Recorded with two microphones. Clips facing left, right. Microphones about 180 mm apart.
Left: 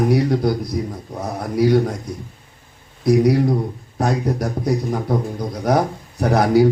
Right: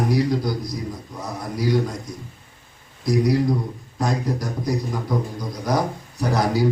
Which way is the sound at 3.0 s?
60° left (ahead or behind).